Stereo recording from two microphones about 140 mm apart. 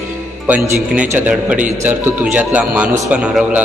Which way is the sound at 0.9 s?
10° right (ahead or behind).